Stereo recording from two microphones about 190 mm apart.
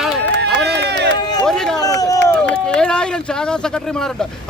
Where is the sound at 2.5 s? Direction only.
5° left (ahead or behind).